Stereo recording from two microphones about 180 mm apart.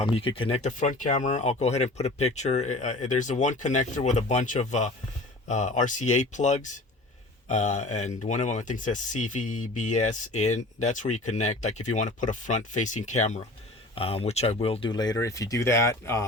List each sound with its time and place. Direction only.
0.0 s speech: 30° left (ahead or behind)